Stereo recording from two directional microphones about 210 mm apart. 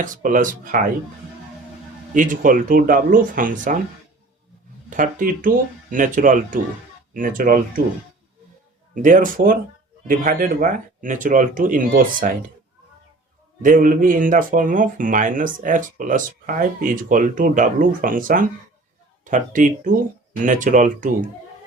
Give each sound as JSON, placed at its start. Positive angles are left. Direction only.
{"t": 0.0, "sound": "speech", "side_deg": -40}
{"t": 2.1, "sound": "speech", "side_deg": -40}
{"t": 4.9, "sound": "speech", "side_deg": -40}
{"t": 9.0, "sound": "speech", "side_deg": -40}
{"t": 13.6, "sound": "speech", "side_deg": -40}